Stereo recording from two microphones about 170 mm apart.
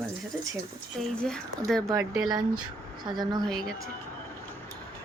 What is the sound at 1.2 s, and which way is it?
Speech, 5° left (ahead or behind).